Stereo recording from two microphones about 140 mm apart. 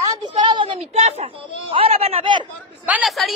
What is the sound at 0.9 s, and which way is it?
Speech, 50° right (ahead or behind).